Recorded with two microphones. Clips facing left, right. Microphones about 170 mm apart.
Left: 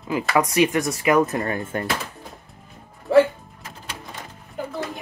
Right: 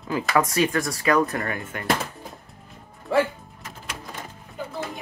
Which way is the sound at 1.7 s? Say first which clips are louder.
Left 7 dB; 35° left (ahead or behind).